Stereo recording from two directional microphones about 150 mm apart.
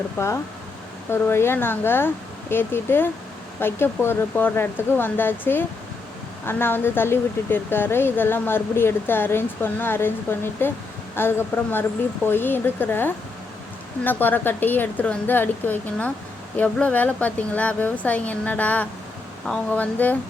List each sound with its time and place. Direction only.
0.2 s speech: 15° left (ahead or behind)